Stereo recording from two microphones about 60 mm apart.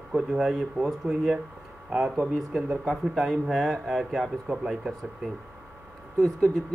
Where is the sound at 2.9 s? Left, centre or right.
Centre.